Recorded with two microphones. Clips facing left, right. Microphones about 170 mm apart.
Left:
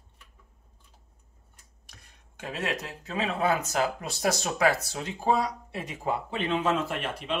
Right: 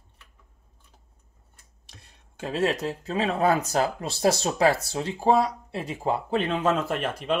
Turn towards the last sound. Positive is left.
turn(degrees=-45)  # may be behind; listen again after turning